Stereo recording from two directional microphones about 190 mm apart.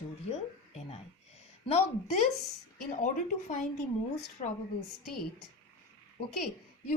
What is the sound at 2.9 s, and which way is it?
Speech, 40° left (ahead or behind).